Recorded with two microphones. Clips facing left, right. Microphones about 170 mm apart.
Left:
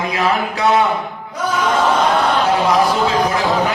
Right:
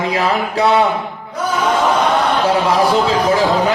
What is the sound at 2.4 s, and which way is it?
A man's voice, 30° right (ahead or behind).